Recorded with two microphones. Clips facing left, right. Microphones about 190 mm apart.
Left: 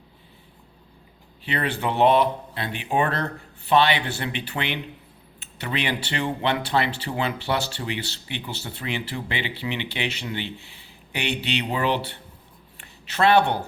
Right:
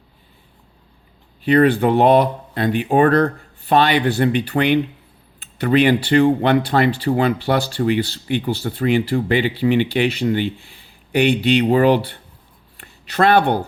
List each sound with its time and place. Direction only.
1.5 s speech: 50° right (ahead or behind)
13.1 s speech: 50° right (ahead or behind)